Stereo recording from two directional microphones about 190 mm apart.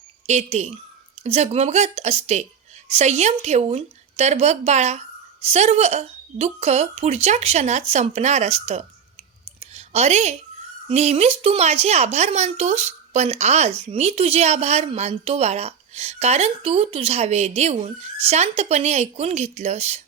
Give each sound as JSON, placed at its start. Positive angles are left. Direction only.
{"t": 0.3, "sound": "a woman's voice", "side_deg": -35}
{"t": 9.6, "sound": "a sound", "side_deg": -35}
{"t": 10.8, "sound": "a woman's voice", "side_deg": -35}